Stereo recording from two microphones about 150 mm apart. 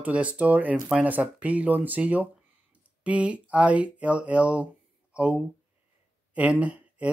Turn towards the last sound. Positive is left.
turn(degrees=-10)  # may be behind; listen again after turning